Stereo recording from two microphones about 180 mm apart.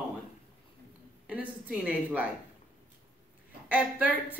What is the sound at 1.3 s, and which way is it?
Speech, 5° right (ahead or behind).